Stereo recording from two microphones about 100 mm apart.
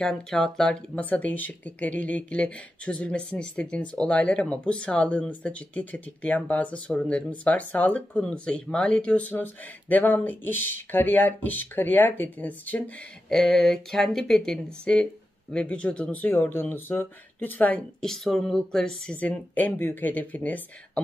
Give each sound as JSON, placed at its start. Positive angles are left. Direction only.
{"t": 0.0, "sound": "speech", "side_deg": 5}